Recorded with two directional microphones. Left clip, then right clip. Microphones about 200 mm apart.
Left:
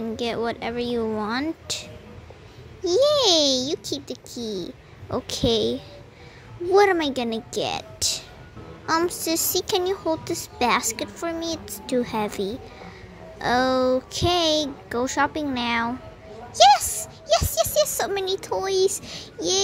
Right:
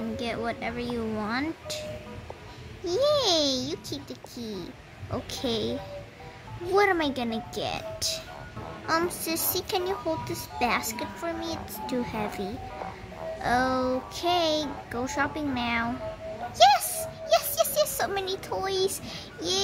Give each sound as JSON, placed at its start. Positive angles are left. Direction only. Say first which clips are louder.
{"t": 0.1, "sound": "speech", "louder": "left 6 dB", "side_deg": 25}
{"t": 16.5, "sound": "music", "louder": "left 4 dB", "side_deg": 25}